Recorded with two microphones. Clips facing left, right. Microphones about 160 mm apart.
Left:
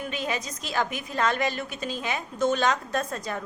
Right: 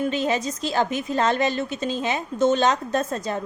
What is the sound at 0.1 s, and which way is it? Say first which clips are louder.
A woman's voice: right 7 dB; 30° right (ahead or behind).